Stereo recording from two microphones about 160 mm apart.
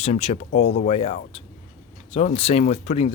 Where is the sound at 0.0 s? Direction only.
40° left (ahead or behind).